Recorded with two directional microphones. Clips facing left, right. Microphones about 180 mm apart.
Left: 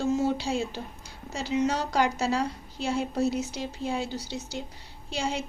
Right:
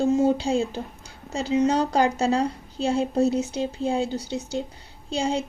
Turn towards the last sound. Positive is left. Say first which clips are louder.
# right 6 dB
turn(degrees=-30)  # may be behind; listen again after turning